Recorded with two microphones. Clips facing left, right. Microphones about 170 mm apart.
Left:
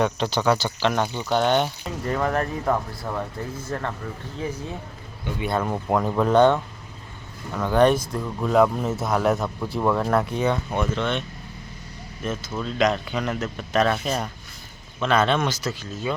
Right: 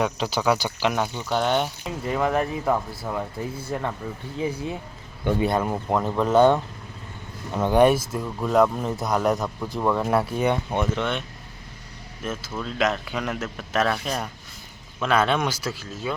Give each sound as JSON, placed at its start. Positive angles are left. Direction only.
{"t": 0.0, "sound": "speech", "side_deg": -5}
{"t": 5.3, "sound": "speech", "side_deg": -55}
{"t": 5.6, "sound": "speech", "side_deg": -5}
{"t": 7.5, "sound": "speech", "side_deg": -20}
{"t": 12.2, "sound": "speech", "side_deg": -5}
{"t": 15.0, "sound": "speech", "side_deg": -10}